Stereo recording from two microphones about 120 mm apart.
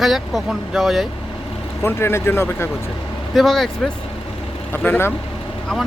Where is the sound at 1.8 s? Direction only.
20° left (ahead or behind).